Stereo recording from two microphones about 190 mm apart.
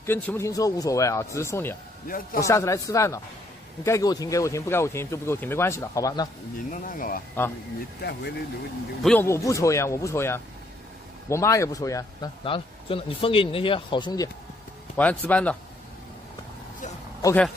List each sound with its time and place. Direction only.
0.0 s speech: 10° left (ahead or behind)
2.0 s speech: 50° left (ahead or behind)
2.4 s speech: 15° left (ahead or behind)
6.7 s speech: 45° left (ahead or behind)
8.0 s speech: 60° left (ahead or behind)
9.0 s speech: 10° left (ahead or behind)
12.4 s speech: 30° left (ahead or behind)
15.0 s speech: 10° left (ahead or behind)